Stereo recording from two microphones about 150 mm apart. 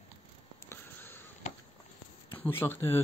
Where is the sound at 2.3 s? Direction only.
15° left (ahead or behind).